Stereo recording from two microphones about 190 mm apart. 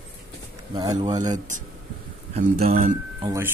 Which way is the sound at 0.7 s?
20° right (ahead or behind).